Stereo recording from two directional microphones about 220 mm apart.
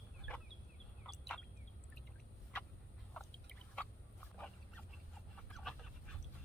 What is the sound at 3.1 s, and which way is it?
Drip, 5° left (ahead or behind).